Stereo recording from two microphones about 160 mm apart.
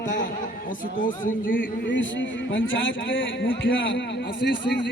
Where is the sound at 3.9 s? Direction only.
90° left.